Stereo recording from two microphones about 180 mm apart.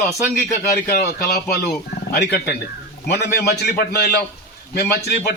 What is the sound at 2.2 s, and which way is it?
A man's voice, 65° left (ahead or behind).